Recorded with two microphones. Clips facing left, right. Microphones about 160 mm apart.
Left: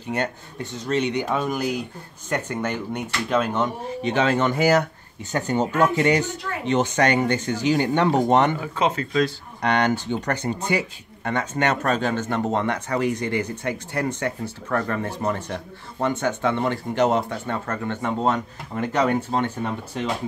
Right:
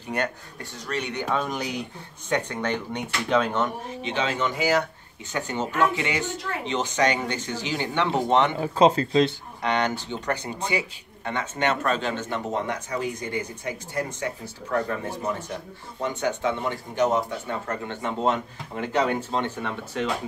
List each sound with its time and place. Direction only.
0.1 s speech: 25° left (ahead or behind)
1.3 s speech: 5° left (ahead or behind)
4.0 s speech: 50° left (ahead or behind)
8.5 s speech: 30° right (ahead or behind)
9.6 s speech: 50° left (ahead or behind)
12.5 s speech: 65° left (ahead or behind)
16.1 s speech: 50° left (ahead or behind); by 17.6 s 65° left (ahead or behind)
17.6 s speech: 45° left (ahead or behind)
19.6 s speech: 35° left (ahead or behind)